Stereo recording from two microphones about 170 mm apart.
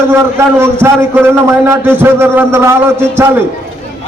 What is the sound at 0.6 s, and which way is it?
A man's voice, 15° right (ahead or behind).